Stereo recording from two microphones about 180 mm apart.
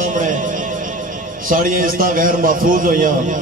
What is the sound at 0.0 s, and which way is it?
Music, 45° right (ahead or behind).